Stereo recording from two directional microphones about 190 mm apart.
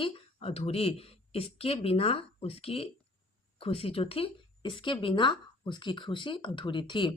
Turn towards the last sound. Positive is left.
turn(degrees=25)  # may be behind; listen again after turning